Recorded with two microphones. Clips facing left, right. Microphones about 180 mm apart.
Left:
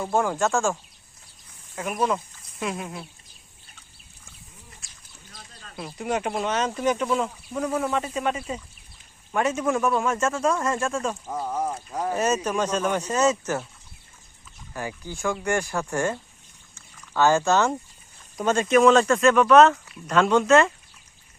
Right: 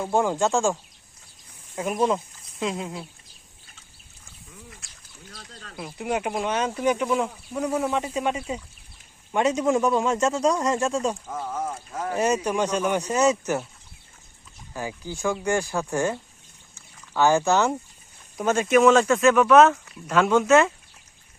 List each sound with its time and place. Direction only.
0.0 s speech: 15° right (ahead or behind)
2.0 s speech: 20° right (ahead or behind)
5.8 s speech: 10° right (ahead or behind)
11.3 s speech: 15° left (ahead or behind)
12.1 s speech: 15° right (ahead or behind)
14.7 s speech: 15° right (ahead or behind)
17.2 s speech: 15° right (ahead or behind)